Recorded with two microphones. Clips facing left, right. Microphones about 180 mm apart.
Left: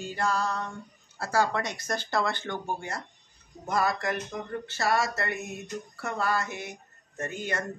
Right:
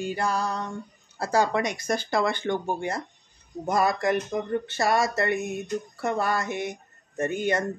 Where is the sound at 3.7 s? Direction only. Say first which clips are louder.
Right 4 dB; 20° right (ahead or behind).